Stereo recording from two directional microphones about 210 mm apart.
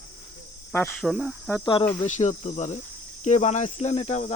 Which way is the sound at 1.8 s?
15° left (ahead or behind).